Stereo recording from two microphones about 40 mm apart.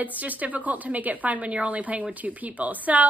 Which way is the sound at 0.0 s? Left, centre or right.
Right.